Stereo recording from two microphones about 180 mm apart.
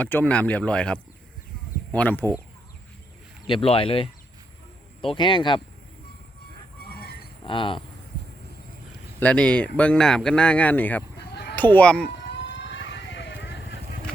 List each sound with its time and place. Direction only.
0.0 s speech: 10° left (ahead or behind)
3.4 s speech: 30° left (ahead or behind)
6.9 s honk: 60° left (ahead or behind)
7.4 s speech: 30° left (ahead or behind)
9.2 s speech: 5° left (ahead or behind)
11.2 s a sound: 65° left (ahead or behind)
11.5 s speech: 10° left (ahead or behind)
12.1 s vehicle: 80° left